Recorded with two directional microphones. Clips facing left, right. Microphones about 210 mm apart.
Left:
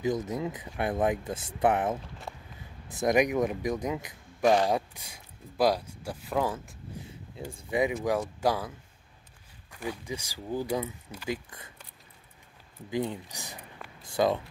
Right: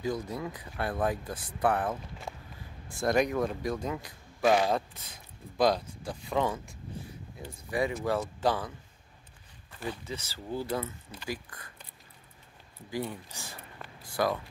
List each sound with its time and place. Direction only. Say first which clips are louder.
0.0 s speech: left 4 dB; 20° left (ahead or behind)
2.3 s a sound: right 1 dB; centre (ahead or behind)
2.9 s speech: left 2 dB; 15° left (ahead or behind)
7.5 s speech: left 3 dB; 20° left (ahead or behind)
11.2 s speech: left 4 dB; 20° left (ahead or behind)
12.9 s speech: left 4 dB; 20° left (ahead or behind)